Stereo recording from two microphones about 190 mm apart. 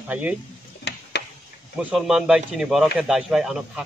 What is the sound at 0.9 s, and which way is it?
Tick-tock, 60° left (ahead or behind).